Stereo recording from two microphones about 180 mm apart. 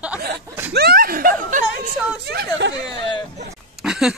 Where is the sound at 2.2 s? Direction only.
65° right (ahead or behind).